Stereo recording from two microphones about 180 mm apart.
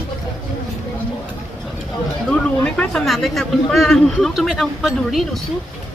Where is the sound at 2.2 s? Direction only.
5° left (ahead or behind).